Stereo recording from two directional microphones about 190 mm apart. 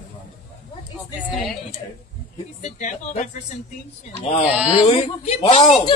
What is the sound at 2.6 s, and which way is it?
Speech, 40° left (ahead or behind).